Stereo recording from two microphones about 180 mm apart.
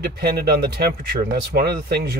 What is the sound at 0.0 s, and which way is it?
Speech, 60° right (ahead or behind).